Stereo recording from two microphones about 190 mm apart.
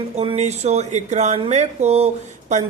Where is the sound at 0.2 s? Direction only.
35° right (ahead or behind).